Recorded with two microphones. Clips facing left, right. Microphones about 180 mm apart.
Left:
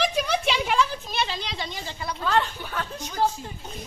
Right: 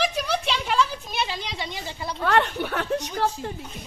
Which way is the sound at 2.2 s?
65° right (ahead or behind).